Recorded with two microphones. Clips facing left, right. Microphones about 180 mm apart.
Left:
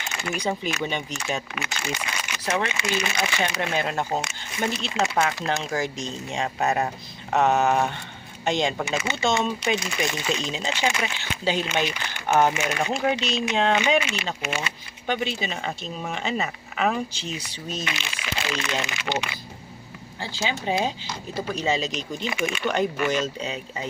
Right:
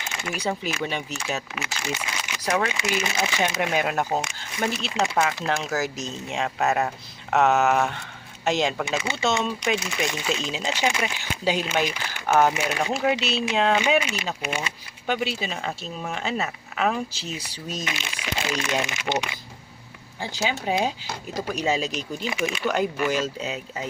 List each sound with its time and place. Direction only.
0.0 s speech: 5° right (ahead or behind)